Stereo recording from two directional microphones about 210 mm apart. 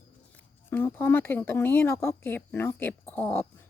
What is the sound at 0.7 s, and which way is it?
Speech, 10° left (ahead or behind).